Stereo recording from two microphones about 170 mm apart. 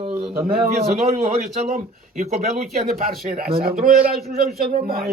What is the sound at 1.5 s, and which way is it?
Speech, 45° right (ahead or behind).